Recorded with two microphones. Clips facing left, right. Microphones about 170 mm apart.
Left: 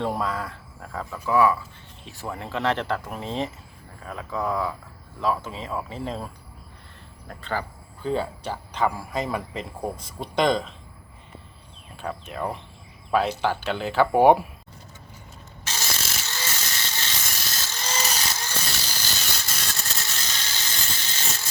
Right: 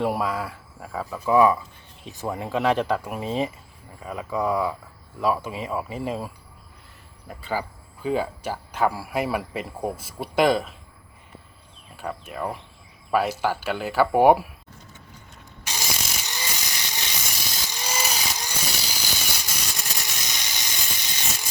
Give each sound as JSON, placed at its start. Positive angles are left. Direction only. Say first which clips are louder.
{"t": 0.0, "sound": "speech", "louder": "right 2 dB", "side_deg": -10}
{"t": 1.2, "sound": "speech", "louder": "right 3 dB", "side_deg": -20}
{"t": 11.9, "sound": "speech", "louder": "even", "side_deg": -5}
{"t": 15.6, "sound": "a sound", "louder": "right 1 dB", "side_deg": -15}